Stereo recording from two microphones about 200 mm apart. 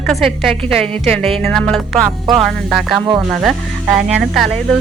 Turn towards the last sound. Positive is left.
turn(degrees=0)  # may be behind; listen again after turning